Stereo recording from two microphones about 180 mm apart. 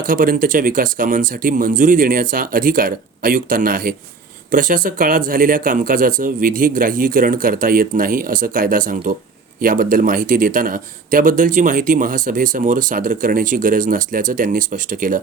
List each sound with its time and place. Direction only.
0.0 s a man's voice: 50° right (ahead or behind)